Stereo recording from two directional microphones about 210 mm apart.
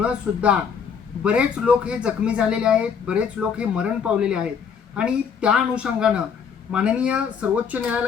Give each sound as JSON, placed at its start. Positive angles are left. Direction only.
{"t": 0.0, "sound": "speech", "side_deg": -5}